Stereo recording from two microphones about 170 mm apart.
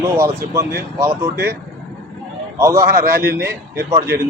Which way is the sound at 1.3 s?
70° right (ahead or behind).